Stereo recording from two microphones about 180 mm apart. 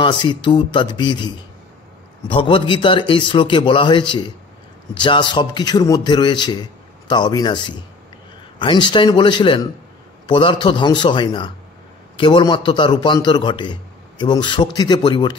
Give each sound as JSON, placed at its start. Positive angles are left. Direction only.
{"t": 0.0, "sound": "a man's voice", "side_deg": 25}